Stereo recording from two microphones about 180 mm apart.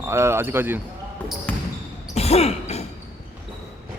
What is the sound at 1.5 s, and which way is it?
Basketball bounce, 10° left (ahead or behind).